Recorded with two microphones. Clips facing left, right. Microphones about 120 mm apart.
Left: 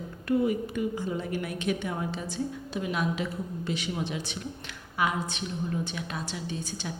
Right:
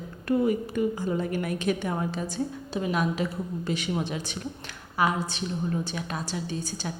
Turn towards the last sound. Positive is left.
turn(degrees=-35)  # may be behind; listen again after turning